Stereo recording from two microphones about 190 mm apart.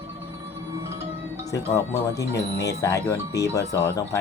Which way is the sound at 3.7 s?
15° left (ahead or behind).